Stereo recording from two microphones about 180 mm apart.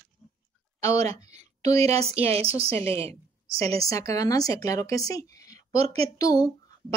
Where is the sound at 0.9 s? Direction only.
35° right (ahead or behind).